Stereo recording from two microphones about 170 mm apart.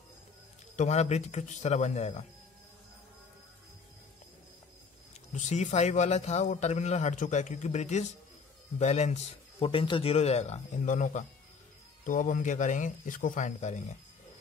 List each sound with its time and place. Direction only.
0.7 s speech: 40° left (ahead or behind)
5.3 s a man's voice: 45° left (ahead or behind)